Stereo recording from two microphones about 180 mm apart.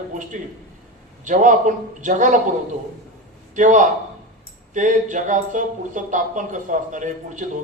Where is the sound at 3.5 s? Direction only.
45° right (ahead or behind).